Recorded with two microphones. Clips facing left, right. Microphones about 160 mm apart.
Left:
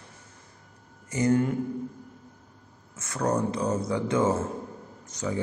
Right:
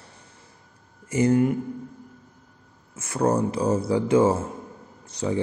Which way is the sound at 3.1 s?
30° right (ahead or behind).